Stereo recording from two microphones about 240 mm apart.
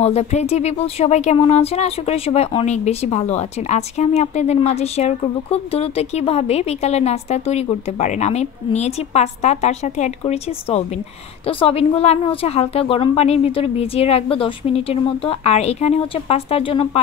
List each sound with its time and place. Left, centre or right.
0.0 s speech: left